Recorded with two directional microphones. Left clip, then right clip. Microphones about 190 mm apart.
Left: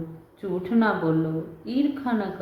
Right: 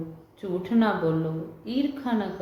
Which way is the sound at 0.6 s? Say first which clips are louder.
Left 1 dB; centre (ahead or behind).